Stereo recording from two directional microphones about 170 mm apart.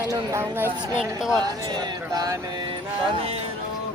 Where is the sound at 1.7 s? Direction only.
25° right (ahead or behind).